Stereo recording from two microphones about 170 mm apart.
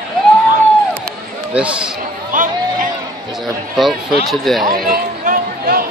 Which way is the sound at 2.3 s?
50° right (ahead or behind).